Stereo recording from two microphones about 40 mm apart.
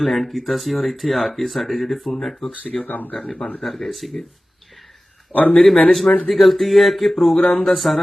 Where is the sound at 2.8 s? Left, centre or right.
Left.